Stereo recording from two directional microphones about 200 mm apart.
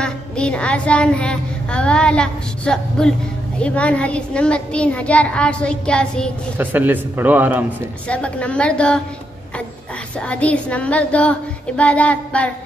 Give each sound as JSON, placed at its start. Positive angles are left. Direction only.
{"t": 0.0, "sound": "speech", "side_deg": 5}
{"t": 6.6, "sound": "a man's voice", "side_deg": -10}
{"t": 8.1, "sound": "speech", "side_deg": 5}
{"t": 10.2, "sound": "speech", "side_deg": 5}